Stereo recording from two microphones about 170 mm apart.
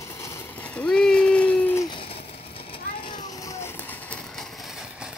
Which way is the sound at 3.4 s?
15° left (ahead or behind).